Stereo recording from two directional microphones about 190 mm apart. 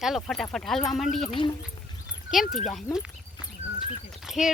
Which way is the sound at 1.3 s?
25° left (ahead or behind).